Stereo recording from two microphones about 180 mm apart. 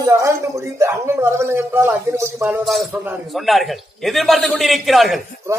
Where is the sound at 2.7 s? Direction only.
Centre (ahead or behind).